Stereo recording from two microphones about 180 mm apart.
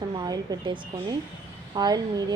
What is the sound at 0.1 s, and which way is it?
A woman's voice, 20° right (ahead or behind).